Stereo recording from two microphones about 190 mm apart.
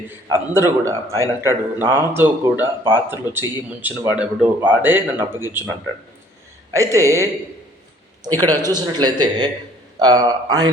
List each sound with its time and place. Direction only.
0.3 s a man's voice: 15° right (ahead or behind)
6.7 s a man's voice: 15° right (ahead or behind)
8.4 s speech: 20° right (ahead or behind)